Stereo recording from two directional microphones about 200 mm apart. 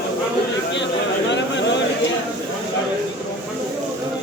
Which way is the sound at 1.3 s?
60° left (ahead or behind).